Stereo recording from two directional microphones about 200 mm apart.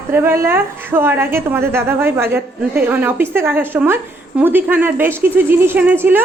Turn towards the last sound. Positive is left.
turn(degrees=-10)  # may be behind; listen again after turning